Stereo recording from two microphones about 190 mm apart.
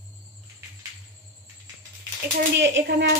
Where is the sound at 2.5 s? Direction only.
70° right (ahead or behind).